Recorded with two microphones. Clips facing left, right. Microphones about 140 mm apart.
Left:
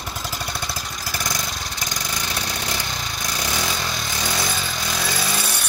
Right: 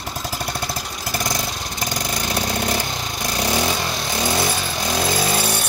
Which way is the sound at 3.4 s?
30° right (ahead or behind).